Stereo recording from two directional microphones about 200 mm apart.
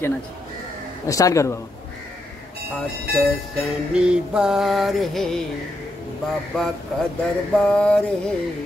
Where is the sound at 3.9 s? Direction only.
5° right (ahead or behind).